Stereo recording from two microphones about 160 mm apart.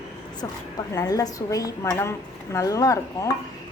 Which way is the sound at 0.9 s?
20° left (ahead or behind).